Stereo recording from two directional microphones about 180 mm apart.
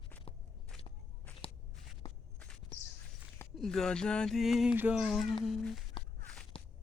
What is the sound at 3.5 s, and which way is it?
Speech, 5° left (ahead or behind).